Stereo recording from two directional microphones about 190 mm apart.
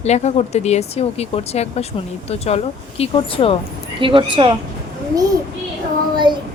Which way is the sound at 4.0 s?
25° right (ahead or behind).